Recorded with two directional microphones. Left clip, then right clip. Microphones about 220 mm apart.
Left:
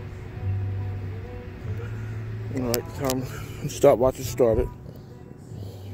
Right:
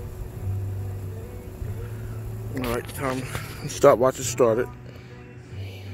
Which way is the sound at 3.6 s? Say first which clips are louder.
Right 1 dB; 25° left (ahead or behind).